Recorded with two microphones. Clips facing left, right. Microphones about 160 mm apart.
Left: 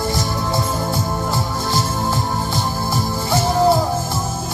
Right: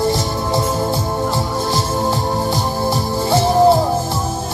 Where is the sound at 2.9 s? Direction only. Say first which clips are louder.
Right 2 dB; 30° right (ahead or behind).